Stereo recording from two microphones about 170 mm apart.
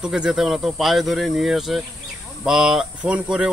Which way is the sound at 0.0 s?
5° right (ahead or behind).